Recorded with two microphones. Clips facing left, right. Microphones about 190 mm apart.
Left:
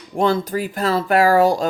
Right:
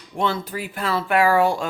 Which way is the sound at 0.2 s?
45° left (ahead or behind).